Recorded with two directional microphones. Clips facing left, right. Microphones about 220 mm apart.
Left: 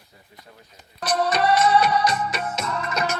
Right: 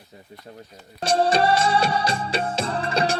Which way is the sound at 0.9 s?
30° right (ahead or behind).